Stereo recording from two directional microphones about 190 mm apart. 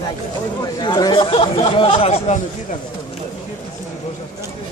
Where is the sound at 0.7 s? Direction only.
20° left (ahead or behind).